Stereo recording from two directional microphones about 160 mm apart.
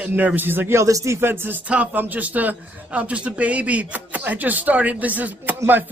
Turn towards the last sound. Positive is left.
turn(degrees=-10)  # may be behind; listen again after turning